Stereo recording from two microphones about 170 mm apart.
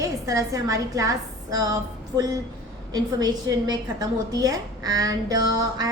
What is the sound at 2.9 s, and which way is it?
A woman's voice, 25° right (ahead or behind).